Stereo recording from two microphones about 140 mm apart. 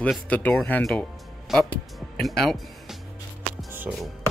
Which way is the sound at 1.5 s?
Centre (ahead or behind).